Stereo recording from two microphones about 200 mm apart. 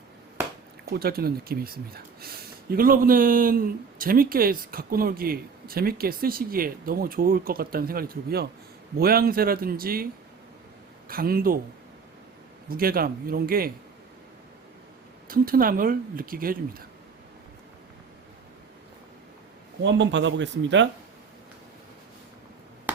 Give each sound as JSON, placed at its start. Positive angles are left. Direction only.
{"t": 0.9, "sound": "speech", "side_deg": -50}
{"t": 11.1, "sound": "speech", "side_deg": -45}
{"t": 12.6, "sound": "speech", "side_deg": -45}
{"t": 15.3, "sound": "speech", "side_deg": -45}
{"t": 19.8, "sound": "speech", "side_deg": -65}